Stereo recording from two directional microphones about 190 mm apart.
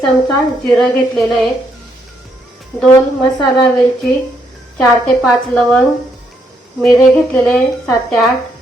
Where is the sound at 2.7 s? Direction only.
15° left (ahead or behind).